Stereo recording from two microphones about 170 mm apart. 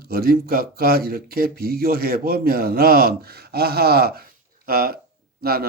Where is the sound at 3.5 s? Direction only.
70° right (ahead or behind).